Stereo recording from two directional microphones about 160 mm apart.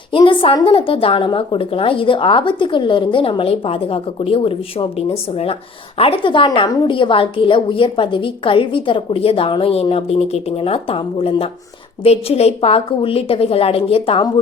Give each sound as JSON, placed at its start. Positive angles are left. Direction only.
{"t": 0.1, "sound": "a woman's voice", "side_deg": 30}